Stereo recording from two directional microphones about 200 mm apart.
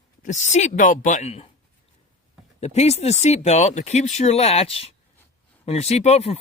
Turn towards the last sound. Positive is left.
turn(degrees=30)  # may be behind; listen again after turning